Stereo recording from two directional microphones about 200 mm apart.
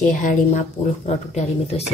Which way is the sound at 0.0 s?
40° left (ahead or behind).